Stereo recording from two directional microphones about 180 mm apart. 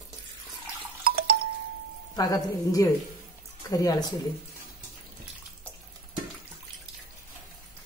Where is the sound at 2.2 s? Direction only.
20° left (ahead or behind).